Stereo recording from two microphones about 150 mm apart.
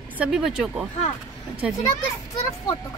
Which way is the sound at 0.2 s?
5° right (ahead or behind).